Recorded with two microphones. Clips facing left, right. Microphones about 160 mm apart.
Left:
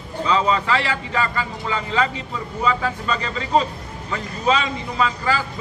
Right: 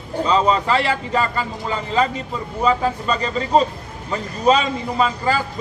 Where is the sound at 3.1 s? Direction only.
35° right (ahead or behind).